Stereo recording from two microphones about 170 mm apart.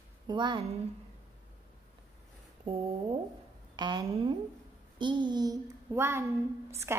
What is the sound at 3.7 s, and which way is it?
A child's voice, 25° right (ahead or behind).